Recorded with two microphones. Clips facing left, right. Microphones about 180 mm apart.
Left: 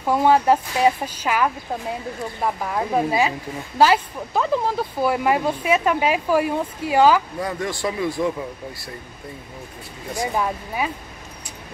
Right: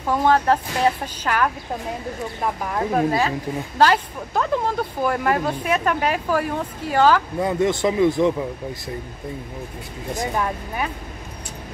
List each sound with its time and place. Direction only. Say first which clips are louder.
0.0 s speech: left 1 dB; 10° left (ahead or behind)
7.4 s speech: right 6 dB; 20° right (ahead or behind)
10.3 s speech: left 1 dB; 5° left (ahead or behind)